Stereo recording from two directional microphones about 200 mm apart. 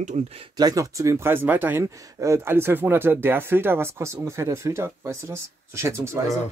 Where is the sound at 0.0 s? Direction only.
35° right (ahead or behind); by 6.2 s 15° right (ahead or behind).